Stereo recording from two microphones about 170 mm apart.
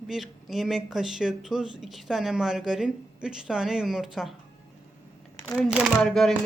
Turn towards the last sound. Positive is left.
turn(degrees=5)  # may be behind; listen again after turning